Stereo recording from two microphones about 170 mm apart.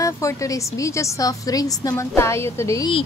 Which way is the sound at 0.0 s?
20° left (ahead or behind).